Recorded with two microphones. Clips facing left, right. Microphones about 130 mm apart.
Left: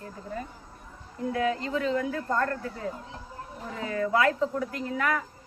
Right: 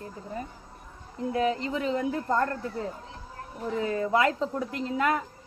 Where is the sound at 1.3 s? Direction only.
25° right (ahead or behind).